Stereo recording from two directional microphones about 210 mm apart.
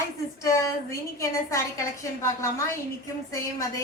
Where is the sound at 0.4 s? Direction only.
15° left (ahead or behind).